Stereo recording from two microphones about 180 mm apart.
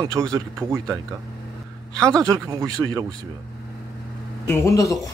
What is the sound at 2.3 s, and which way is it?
Speech, 20° right (ahead or behind).